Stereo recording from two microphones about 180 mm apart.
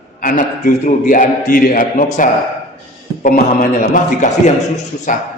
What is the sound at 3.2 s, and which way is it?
A man's voice, 50° left (ahead or behind).